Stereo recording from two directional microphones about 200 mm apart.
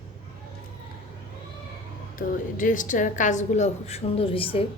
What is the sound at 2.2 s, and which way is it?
A woman's voice, 40° left (ahead or behind).